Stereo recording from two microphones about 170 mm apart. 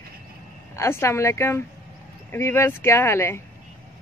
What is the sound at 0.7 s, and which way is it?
Speech, 15° left (ahead or behind).